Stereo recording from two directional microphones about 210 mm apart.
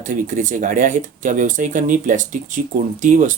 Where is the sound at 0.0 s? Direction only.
40° right (ahead or behind).